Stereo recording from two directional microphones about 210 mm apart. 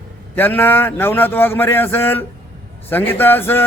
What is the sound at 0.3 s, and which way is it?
A man's voice, 10° left (ahead or behind).